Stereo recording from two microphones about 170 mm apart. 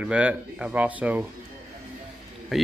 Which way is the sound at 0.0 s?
10° right (ahead or behind).